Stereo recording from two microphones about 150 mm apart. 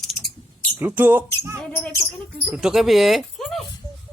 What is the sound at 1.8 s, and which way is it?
Speech, 15° left (ahead or behind).